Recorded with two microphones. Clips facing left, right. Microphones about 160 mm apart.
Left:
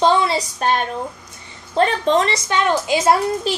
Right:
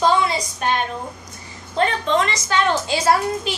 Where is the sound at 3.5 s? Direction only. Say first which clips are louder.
Left 5 dB; 35° left (ahead or behind).